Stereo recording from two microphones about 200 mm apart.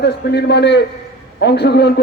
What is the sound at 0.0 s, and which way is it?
A man's voice, 55° left (ahead or behind).